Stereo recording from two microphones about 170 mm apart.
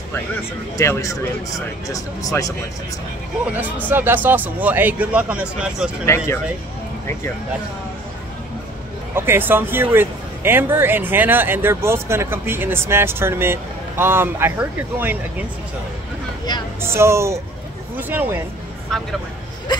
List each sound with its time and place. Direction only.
0.7 s speech: 20° left (ahead or behind)
3.8 s speech: 10° right (ahead or behind)
6.0 s speech: 15° left (ahead or behind)
9.1 s speech: 15° right (ahead or behind)
16.5 s speech: 25° left (ahead or behind)
16.8 s speech: 15° right (ahead or behind)